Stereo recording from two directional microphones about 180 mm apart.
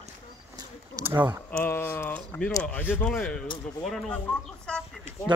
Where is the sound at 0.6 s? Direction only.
15° right (ahead or behind).